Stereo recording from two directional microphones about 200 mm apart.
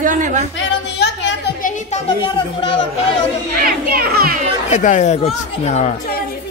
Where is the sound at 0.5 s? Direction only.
65° left (ahead or behind).